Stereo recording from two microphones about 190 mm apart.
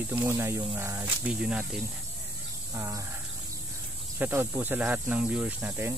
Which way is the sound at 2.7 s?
15° right (ahead or behind).